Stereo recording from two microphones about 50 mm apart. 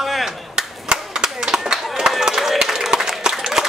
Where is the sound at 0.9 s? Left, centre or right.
Centre.